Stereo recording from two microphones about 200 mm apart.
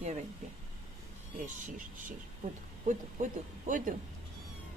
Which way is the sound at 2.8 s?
40° right (ahead or behind).